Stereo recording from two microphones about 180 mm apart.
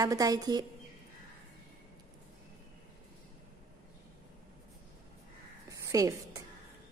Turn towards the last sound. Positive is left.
turn(degrees=-20)  # may be behind; listen again after turning